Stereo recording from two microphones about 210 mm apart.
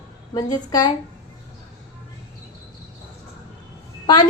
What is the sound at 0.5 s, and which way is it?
Speech, 20° left (ahead or behind).